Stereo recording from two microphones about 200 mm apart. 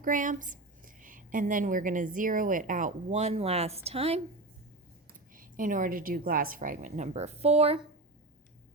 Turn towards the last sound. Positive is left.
turn(degrees=-30)  # may be behind; listen again after turning